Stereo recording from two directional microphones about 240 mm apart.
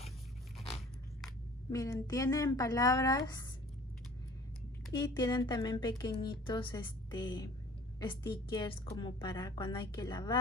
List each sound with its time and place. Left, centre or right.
1.7 s speech: centre
4.9 s a woman's voice: centre